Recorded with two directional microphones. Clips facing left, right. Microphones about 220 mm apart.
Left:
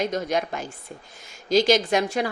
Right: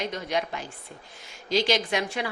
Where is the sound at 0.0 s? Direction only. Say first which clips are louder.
Left 4 dB; 45° left (ahead or behind).